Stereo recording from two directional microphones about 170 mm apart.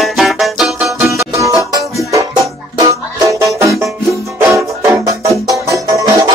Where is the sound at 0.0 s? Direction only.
Centre (ahead or behind).